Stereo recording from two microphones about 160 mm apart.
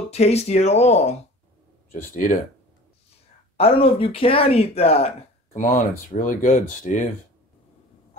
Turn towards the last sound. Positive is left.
turn(degrees=55)  # may be behind; listen again after turning